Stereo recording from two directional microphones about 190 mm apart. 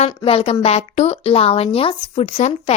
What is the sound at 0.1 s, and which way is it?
A woman's voice, 25° left (ahead or behind).